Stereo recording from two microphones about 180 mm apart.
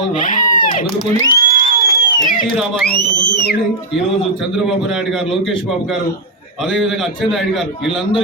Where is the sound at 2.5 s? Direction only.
Centre (ahead or behind).